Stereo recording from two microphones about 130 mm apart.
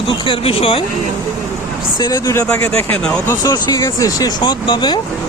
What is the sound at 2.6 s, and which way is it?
Speech, 50° right (ahead or behind).